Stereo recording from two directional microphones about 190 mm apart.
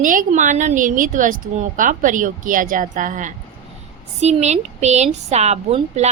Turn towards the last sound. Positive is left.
turn(degrees=-35)  # may be behind; listen again after turning